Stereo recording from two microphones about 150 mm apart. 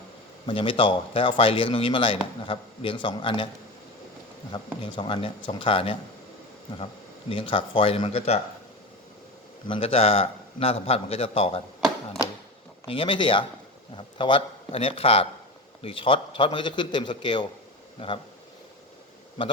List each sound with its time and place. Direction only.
0.4 s a man's voice: 35° left (ahead or behind)
4.5 s a man's voice: 35° left (ahead or behind)
7.3 s a man's voice: 35° left (ahead or behind)
9.6 s a man's voice: 40° left (ahead or behind)
12.9 s a man's voice: 35° left (ahead or behind)